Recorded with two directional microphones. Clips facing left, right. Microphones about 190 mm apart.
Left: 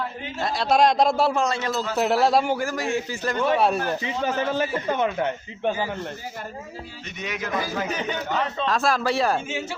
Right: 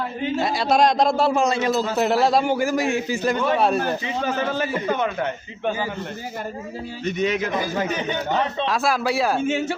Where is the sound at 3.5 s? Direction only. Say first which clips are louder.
Even; 5° left (ahead or behind).